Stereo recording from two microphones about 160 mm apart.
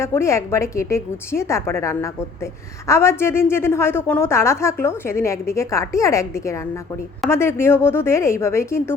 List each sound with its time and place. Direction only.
0.0 s a woman's voice: 15° left (ahead or behind)